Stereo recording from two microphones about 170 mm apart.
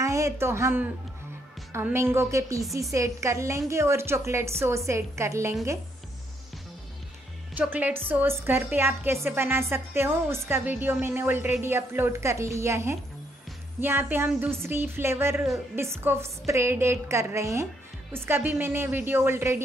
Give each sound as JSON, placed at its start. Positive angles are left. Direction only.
{"t": 0.0, "sound": "a woman's voice", "side_deg": -15}
{"t": 7.5, "sound": "a woman's voice", "side_deg": -10}